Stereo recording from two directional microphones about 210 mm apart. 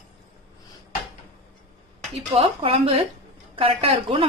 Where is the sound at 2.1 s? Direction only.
25° right (ahead or behind).